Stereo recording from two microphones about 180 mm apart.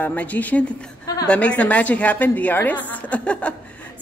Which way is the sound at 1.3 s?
5° left (ahead or behind).